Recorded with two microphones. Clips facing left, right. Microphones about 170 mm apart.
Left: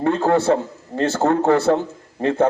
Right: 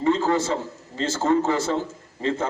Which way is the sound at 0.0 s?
60° left (ahead or behind).